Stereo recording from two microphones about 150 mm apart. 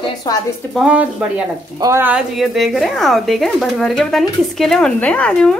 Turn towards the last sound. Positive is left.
turn(degrees=5)  # may be behind; listen again after turning